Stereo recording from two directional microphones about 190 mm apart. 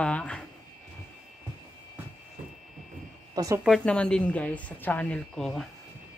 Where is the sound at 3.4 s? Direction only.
15° right (ahead or behind).